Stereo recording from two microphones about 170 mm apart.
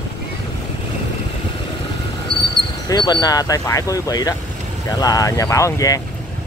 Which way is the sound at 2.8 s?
25° left (ahead or behind).